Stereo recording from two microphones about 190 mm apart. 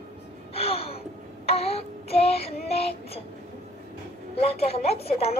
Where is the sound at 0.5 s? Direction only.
30° left (ahead or behind).